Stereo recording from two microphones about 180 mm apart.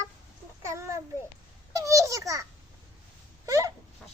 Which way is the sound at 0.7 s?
15° right (ahead or behind).